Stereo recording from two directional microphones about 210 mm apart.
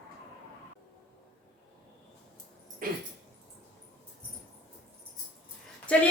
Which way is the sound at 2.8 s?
40° right (ahead or behind).